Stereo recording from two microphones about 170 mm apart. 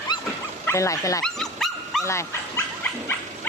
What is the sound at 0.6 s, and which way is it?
Speech, 15° left (ahead or behind).